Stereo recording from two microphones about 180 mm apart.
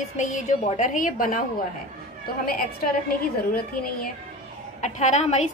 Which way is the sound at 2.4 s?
55° left (ahead or behind).